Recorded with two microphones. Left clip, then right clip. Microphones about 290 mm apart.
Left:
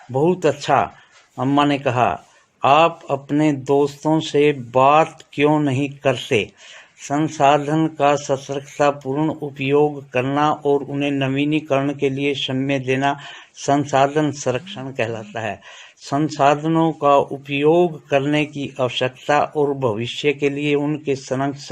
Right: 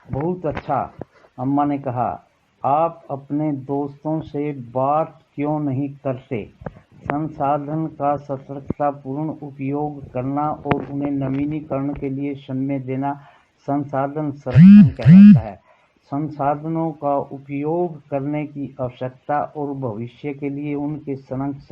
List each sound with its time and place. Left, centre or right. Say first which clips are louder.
0.3 s a man's voice: left 5 dB; left